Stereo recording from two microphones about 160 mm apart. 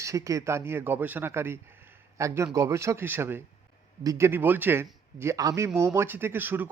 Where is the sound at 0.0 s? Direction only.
20° right (ahead or behind).